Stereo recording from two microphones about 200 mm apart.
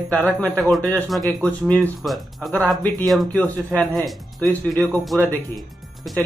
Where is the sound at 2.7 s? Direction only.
20° right (ahead or behind).